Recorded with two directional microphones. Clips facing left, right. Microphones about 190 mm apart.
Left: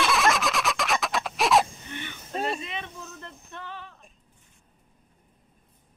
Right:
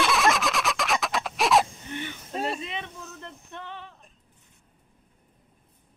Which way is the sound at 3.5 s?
25° right (ahead or behind).